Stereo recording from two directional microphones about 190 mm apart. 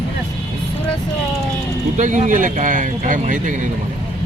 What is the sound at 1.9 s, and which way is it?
Speech, 40° right (ahead or behind).